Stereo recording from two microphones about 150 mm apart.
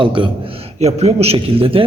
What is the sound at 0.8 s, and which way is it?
A man's voice, 45° right (ahead or behind).